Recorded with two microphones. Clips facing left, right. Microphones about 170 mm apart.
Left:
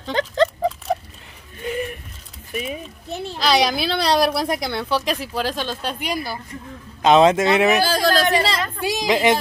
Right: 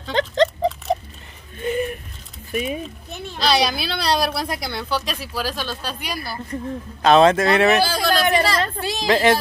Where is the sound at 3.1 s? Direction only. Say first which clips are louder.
Left 8 dB; 35° left (ahead or behind).